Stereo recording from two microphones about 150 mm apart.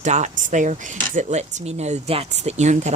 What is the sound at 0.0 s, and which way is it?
Speech, 50° right (ahead or behind).